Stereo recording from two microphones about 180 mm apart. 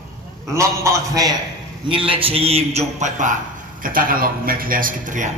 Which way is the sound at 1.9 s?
30° right (ahead or behind).